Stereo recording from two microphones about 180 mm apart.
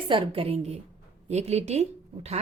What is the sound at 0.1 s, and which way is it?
A woman's voice, 30° right (ahead or behind).